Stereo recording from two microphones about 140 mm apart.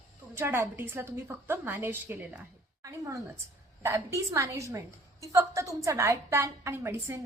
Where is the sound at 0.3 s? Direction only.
15° right (ahead or behind).